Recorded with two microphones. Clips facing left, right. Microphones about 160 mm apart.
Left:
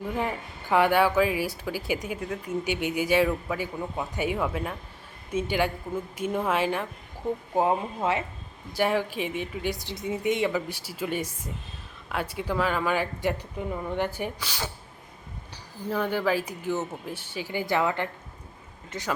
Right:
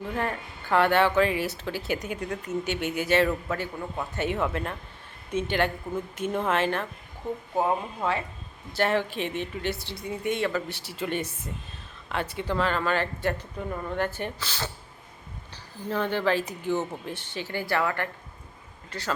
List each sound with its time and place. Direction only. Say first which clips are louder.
0.1 s speech: even; 15° left (ahead or behind)
7.5 s speech: left 1 dB; 20° left (ahead or behind)
8.7 s speech: even; 10° left (ahead or behind)
15.9 s speech: even; 10° left (ahead or behind)